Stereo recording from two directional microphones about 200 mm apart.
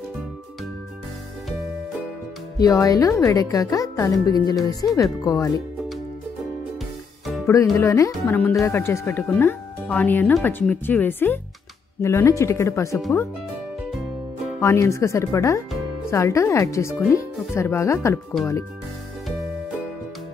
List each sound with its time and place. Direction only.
2.6 s speech: 15° left (ahead or behind)
7.7 s speech: 15° left (ahead or behind)
14.6 s speech: 15° left (ahead or behind)